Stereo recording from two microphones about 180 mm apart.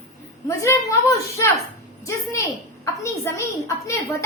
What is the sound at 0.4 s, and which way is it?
Speech, 15° left (ahead or behind).